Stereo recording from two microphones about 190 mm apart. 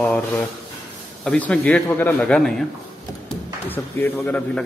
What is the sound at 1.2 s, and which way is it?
A man's voice, 5° left (ahead or behind).